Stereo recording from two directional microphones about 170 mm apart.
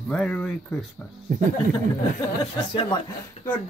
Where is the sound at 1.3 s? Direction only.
60° right (ahead or behind).